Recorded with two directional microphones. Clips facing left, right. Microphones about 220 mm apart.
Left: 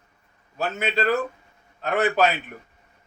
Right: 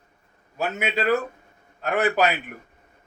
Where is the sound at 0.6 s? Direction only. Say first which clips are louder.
Left 1 dB; 15° right (ahead or behind).